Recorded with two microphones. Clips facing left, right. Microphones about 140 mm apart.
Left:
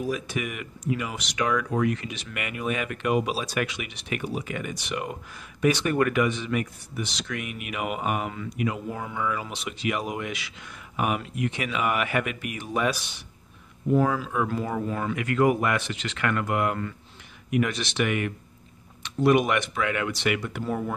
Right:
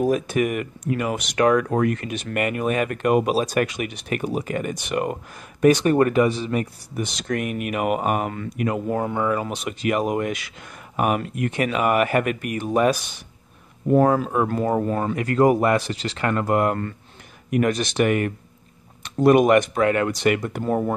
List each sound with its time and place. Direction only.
0.0 s speech: 50° right (ahead or behind)